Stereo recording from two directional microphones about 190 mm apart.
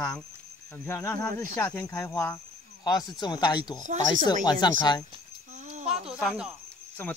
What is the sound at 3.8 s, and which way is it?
Speech, 40° right (ahead or behind).